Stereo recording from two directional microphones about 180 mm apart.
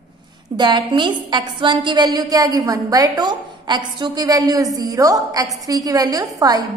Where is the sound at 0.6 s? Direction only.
25° right (ahead or behind).